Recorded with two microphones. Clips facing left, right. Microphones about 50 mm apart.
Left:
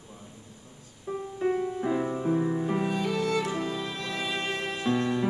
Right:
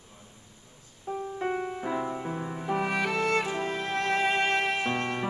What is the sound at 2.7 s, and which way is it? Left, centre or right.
Music, right.